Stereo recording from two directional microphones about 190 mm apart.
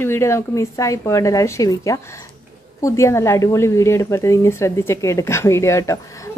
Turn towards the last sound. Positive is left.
turn(degrees=15)  # may be behind; listen again after turning